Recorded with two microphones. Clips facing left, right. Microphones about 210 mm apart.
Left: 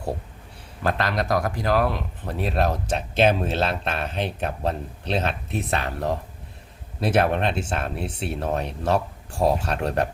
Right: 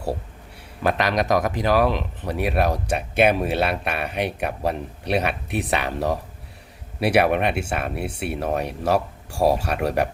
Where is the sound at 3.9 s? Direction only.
65° right (ahead or behind).